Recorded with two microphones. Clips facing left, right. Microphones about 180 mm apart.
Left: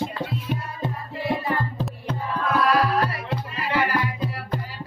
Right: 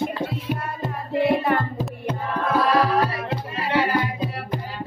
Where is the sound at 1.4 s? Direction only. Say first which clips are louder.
Right 4 dB; 60° right (ahead or behind).